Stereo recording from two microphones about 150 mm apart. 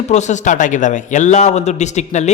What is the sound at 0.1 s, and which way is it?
A man's voice, 50° left (ahead or behind).